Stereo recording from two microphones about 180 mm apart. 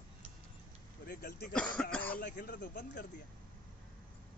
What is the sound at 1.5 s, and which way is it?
Speech, 5° left (ahead or behind).